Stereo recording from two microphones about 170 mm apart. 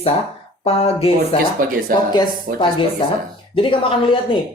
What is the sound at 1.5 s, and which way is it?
Speech, 55° right (ahead or behind).